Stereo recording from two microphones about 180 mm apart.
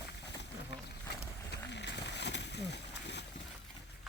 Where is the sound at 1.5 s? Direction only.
70° left (ahead or behind).